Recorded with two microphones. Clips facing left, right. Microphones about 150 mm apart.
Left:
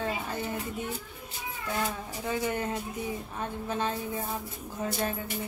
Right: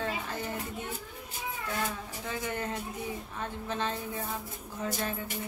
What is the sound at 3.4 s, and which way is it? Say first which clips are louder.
Speech: left 2 dB; 15° left (ahead or behind).